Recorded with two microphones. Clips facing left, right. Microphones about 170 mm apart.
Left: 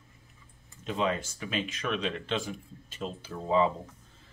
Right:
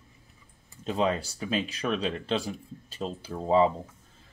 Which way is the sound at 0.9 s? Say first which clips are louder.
Right 3 dB; 35° right (ahead or behind).